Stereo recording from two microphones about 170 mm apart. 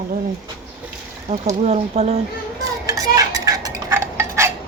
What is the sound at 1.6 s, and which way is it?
Speech, 40° right (ahead or behind).